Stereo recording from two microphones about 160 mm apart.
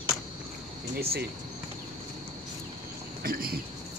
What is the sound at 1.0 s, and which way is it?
Speech, 80° right.